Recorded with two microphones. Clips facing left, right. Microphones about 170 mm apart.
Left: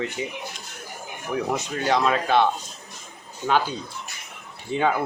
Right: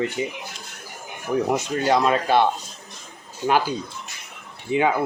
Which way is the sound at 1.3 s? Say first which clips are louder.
Right 4 dB; 15° right (ahead or behind).